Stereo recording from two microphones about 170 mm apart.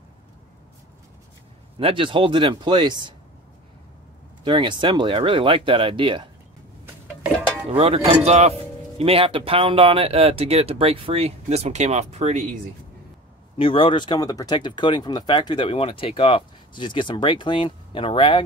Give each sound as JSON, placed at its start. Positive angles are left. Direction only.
{"t": 1.8, "sound": "speech", "side_deg": -30}
{"t": 4.5, "sound": "speech", "side_deg": -30}
{"t": 7.7, "sound": "speech", "side_deg": -35}
{"t": 13.6, "sound": "speech", "side_deg": 30}